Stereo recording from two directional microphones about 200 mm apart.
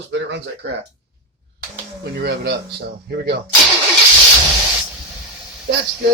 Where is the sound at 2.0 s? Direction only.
55° right (ahead or behind).